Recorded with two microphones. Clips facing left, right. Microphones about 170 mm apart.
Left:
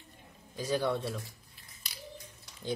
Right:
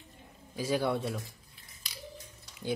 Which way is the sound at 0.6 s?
10° right (ahead or behind).